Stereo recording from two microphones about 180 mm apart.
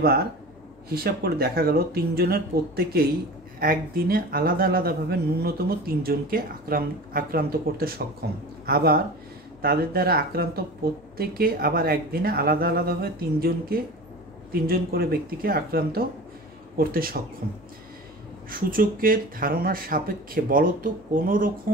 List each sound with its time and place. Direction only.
0.8 s speech: 60° right (ahead or behind)
18.5 s speech: 50° right (ahead or behind)